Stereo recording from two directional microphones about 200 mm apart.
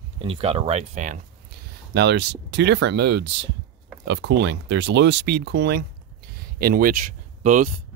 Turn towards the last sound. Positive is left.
turn(degrees=-40)  # may be behind; listen again after turning